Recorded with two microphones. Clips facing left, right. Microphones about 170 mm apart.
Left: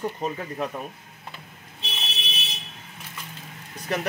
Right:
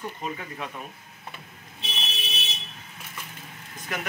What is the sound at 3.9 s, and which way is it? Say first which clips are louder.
Speech: left 6 dB; 30° left (ahead or behind).